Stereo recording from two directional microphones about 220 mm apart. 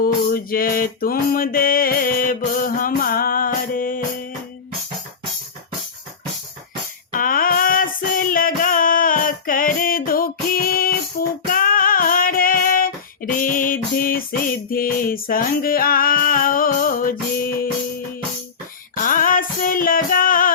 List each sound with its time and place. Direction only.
0.0 s music: 40° left (ahead or behind)
7.1 s music: 40° left (ahead or behind)
11.5 s female singing: 40° left (ahead or behind)
18.9 s music: 35° left (ahead or behind)